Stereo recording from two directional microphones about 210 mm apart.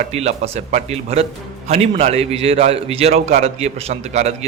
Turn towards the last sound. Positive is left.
turn(degrees=-30)  # may be behind; listen again after turning